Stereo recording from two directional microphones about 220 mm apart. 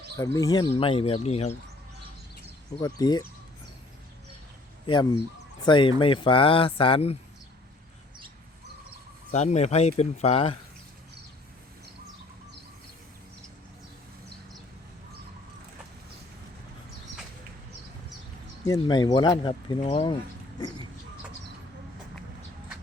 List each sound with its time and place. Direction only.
0.2 s speech: 15° left (ahead or behind); by 1.5 s 30° left (ahead or behind)
2.8 s speech: 15° left (ahead or behind)
4.9 s speech: 25° left (ahead or behind)
9.3 s speech: 30° left (ahead or behind)
18.6 s speech: 15° left (ahead or behind)